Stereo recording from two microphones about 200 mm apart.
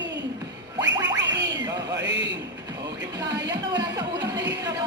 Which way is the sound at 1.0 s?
60° right (ahead or behind).